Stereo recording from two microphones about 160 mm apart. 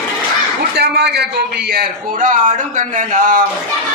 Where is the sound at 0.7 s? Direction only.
90° right.